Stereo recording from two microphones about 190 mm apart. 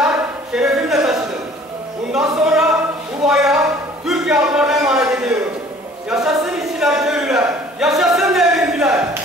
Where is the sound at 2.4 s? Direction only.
5° right (ahead or behind).